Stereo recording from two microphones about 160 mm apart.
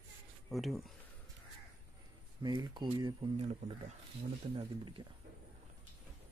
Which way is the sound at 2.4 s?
25° right (ahead or behind).